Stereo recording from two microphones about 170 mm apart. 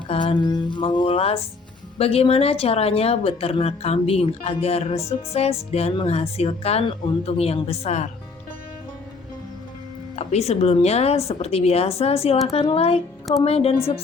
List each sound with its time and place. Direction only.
0.1 s a sound: 30° left (ahead or behind)
2.0 s speech: 35° left (ahead or behind)
10.2 s speech: 40° left (ahead or behind)